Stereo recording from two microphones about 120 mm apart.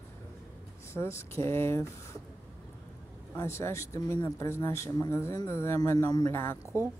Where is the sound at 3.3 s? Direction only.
20° left (ahead or behind).